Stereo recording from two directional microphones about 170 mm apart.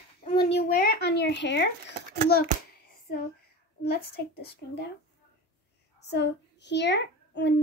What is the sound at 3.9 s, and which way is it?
Speech, 70° left (ahead or behind).